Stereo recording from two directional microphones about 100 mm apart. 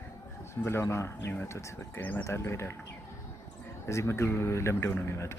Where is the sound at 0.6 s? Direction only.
30° left (ahead or behind).